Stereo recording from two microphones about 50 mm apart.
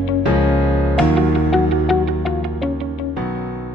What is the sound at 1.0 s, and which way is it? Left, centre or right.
Music, centre.